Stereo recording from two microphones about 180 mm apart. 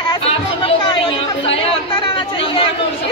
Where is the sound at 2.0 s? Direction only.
30° left (ahead or behind).